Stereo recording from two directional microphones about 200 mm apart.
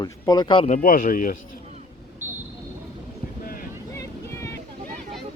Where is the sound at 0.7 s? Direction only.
45° left (ahead or behind).